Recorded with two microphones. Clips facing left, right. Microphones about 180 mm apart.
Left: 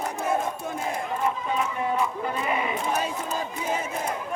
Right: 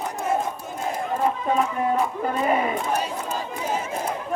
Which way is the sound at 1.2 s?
45° right (ahead or behind).